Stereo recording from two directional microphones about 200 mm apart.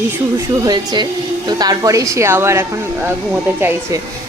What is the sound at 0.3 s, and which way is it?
A woman's voice, 15° right (ahead or behind).